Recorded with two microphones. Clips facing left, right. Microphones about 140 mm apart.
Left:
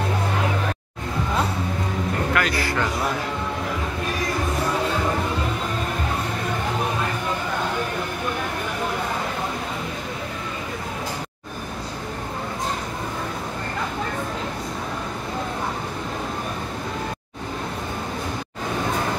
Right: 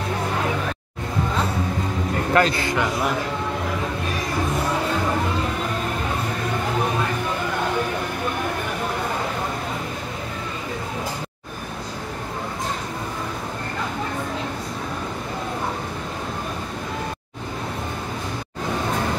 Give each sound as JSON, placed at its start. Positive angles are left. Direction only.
{"t": 2.3, "sound": "a man's voice", "side_deg": -25}